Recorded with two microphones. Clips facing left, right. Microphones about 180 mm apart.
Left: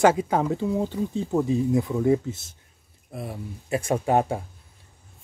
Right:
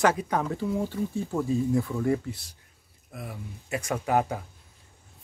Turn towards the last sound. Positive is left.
turn(degrees=30)  # may be behind; listen again after turning